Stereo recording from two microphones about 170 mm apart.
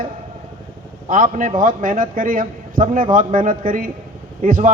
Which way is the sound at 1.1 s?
50° right (ahead or behind).